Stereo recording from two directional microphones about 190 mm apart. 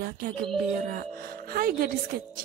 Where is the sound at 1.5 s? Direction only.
50° right (ahead or behind).